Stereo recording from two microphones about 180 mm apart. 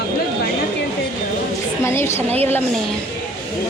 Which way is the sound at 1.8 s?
15° left (ahead or behind).